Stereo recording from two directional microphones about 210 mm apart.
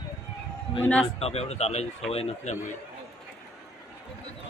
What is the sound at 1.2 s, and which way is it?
Speech, 30° left (ahead or behind).